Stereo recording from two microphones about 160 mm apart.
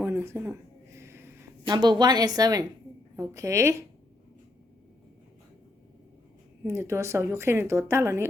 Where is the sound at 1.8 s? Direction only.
25° right (ahead or behind).